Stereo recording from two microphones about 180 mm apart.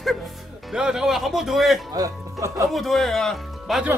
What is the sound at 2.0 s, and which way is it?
Speech, 15° right (ahead or behind).